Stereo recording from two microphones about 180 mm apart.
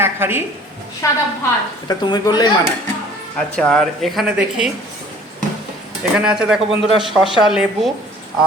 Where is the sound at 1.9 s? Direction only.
25° left (ahead or behind).